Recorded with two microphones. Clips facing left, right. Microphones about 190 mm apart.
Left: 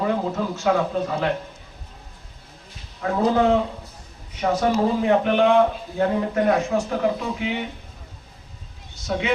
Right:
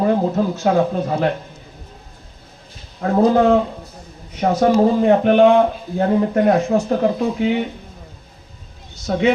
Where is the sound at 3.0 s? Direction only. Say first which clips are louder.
Right 5 dB; 45° right (ahead or behind).